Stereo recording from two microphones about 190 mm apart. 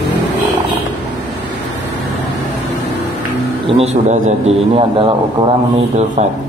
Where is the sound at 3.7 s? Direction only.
35° right (ahead or behind).